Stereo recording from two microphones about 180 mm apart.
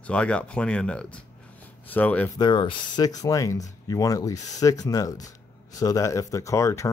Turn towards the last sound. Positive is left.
turn(degrees=15)  # may be behind; listen again after turning